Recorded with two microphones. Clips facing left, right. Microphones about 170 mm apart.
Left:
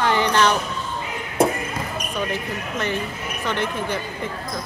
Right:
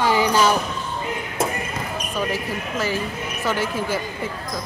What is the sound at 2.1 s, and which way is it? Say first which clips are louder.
Speech: right 2 dB; 5° right (ahead or behind).